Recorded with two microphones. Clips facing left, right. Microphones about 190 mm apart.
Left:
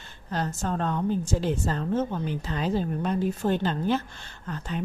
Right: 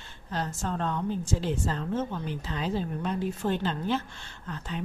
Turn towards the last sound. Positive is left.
turn(degrees=45)  # may be behind; listen again after turning